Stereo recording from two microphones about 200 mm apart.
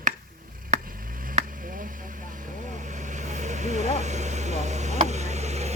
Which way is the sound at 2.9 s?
40° right (ahead or behind).